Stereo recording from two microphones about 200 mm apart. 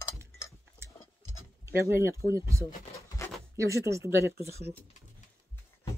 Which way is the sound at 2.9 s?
15° left (ahead or behind).